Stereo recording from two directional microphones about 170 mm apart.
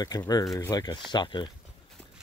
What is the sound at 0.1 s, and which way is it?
Speech, 25° left (ahead or behind).